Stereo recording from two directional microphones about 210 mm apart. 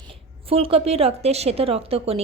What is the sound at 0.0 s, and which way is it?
Speech, 25° right (ahead or behind).